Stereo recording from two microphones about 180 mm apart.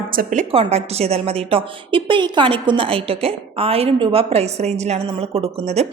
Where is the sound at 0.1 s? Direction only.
50° right (ahead or behind).